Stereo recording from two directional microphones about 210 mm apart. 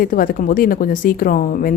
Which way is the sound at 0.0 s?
40° left (ahead or behind).